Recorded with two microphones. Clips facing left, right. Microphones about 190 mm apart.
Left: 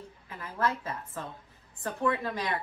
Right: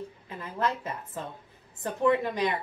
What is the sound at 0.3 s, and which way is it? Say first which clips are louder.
A woman's voice: right 1 dB; 20° right (ahead or behind).